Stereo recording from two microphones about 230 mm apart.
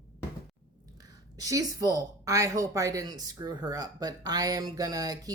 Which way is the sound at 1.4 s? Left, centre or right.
Centre.